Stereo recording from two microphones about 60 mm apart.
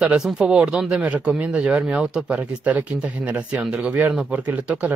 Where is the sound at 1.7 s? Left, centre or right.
Centre.